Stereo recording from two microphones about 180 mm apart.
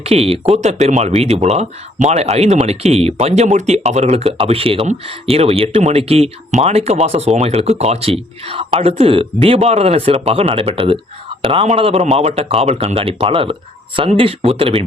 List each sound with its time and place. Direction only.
0.0 s speech: 35° right (ahead or behind)